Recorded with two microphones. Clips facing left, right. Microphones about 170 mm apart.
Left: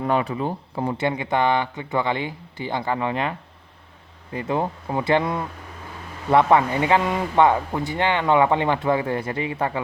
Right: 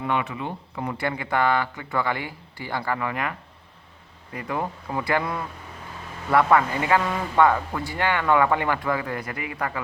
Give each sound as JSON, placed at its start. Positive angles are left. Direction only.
{"t": 0.0, "sound": "speech", "side_deg": 35}